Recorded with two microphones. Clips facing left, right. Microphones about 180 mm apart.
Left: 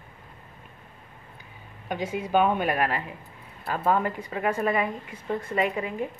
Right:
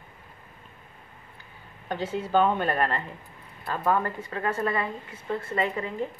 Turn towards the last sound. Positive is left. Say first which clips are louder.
# left 1 dB
turn(degrees=10)  # may be behind; listen again after turning